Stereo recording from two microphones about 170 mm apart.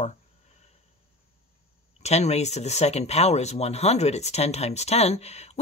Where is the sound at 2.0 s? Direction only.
40° left (ahead or behind).